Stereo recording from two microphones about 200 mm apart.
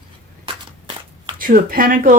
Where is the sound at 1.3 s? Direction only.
45° right (ahead or behind).